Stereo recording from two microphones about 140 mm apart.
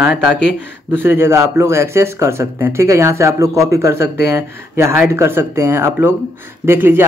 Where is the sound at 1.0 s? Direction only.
15° right (ahead or behind).